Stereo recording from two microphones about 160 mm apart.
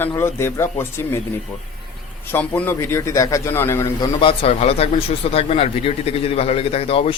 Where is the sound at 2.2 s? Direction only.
15° left (ahead or behind); by 7.1 s 35° left (ahead or behind).